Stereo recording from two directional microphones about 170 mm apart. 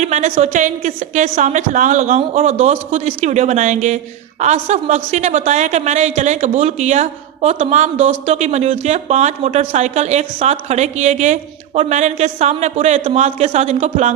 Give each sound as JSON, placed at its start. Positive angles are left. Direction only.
{"t": 0.0, "sound": "a woman's voice", "side_deg": -45}